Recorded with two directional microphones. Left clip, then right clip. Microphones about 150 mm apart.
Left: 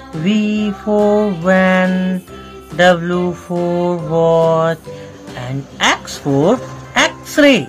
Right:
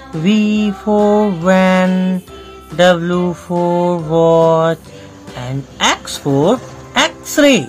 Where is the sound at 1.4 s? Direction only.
30° right (ahead or behind).